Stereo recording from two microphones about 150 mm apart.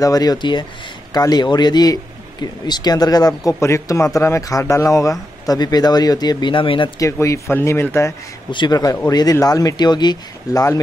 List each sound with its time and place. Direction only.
0.0 s speech: 25° left (ahead or behind)
7.0 s speech: 20° left (ahead or behind)
8.5 s speech: 30° left (ahead or behind)